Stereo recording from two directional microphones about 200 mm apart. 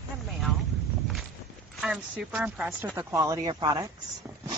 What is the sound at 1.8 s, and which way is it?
Speech, 5° right (ahead or behind).